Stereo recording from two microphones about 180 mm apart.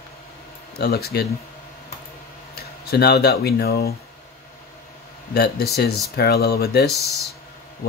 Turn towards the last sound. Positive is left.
turn(degrees=60)  # may be behind; listen again after turning